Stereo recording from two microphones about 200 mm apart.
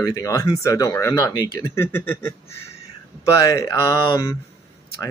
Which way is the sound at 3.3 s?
15° left (ahead or behind).